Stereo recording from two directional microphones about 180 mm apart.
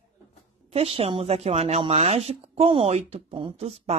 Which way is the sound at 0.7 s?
35° right (ahead or behind).